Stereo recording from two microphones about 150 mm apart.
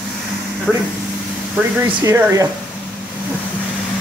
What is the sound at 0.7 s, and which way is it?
Vehicle, 5° right (ahead or behind).